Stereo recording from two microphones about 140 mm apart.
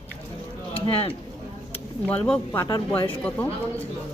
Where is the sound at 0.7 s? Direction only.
40° left (ahead or behind).